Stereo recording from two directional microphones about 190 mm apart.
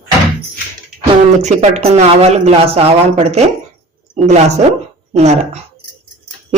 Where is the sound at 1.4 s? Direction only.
40° right (ahead or behind).